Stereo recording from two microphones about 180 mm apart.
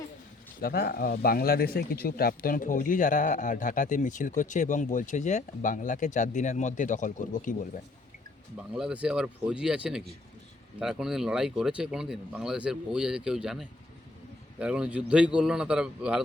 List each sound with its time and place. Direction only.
0.6 s speech: 60° left (ahead or behind)
8.5 s speech: 5° right (ahead or behind)